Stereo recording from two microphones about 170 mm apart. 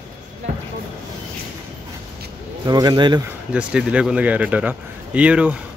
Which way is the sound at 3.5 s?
5° right (ahead or behind).